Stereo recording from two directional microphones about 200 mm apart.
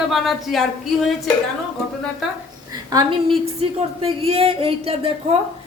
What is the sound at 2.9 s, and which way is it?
A woman's voice, 25° right (ahead or behind).